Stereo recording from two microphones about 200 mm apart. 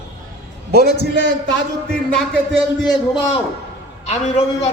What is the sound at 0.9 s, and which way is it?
Speech, 60° left (ahead or behind).